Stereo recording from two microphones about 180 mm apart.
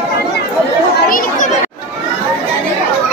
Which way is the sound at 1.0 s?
50° left (ahead or behind).